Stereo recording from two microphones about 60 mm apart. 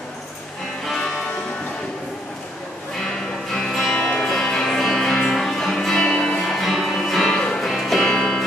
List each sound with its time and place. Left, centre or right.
0.8 s music: centre
3.5 s music: centre
7.3 s music: centre
7.6 s music: centre